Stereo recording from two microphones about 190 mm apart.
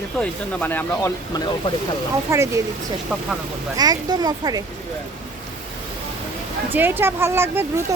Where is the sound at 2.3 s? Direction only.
15° right (ahead or behind).